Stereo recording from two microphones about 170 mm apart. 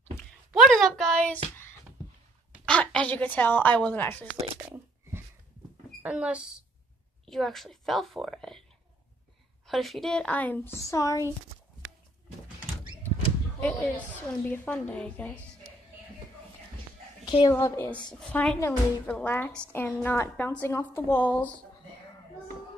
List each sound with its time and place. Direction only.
0.5 s a sound: centre (ahead or behind)
2.6 s a woman's voice: 5° left (ahead or behind)
4.6 s a sound: 15° right (ahead or behind)
6.0 s a woman's voice: 5° right (ahead or behind)
9.7 s a woman's voice: centre (ahead or behind); by 11.2 s 20° left (ahead or behind)
13.6 s a woman's voice: 10° left (ahead or behind)
17.5 s a woman's voice: 15° left (ahead or behind)
18.2 s a woman's voice: 5° left (ahead or behind)